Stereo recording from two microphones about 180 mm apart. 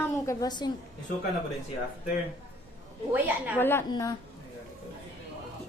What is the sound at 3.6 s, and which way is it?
Speech, 10° left (ahead or behind).